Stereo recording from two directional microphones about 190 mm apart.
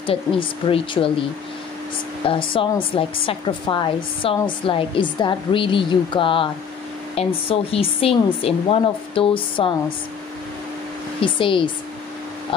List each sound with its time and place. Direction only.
0.0 s a woman's voice: 25° left (ahead or behind)
2.2 s a woman's voice: 25° left (ahead or behind)
11.1 s a woman's voice: 25° left (ahead or behind)